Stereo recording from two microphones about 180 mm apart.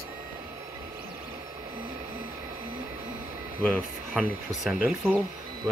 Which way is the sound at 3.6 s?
5° left (ahead or behind).